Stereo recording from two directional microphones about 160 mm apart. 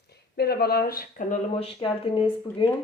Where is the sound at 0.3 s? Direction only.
75° left (ahead or behind).